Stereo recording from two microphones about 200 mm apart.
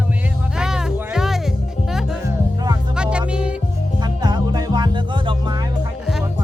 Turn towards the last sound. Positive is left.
turn(degrees=-25)  # may be behind; listen again after turning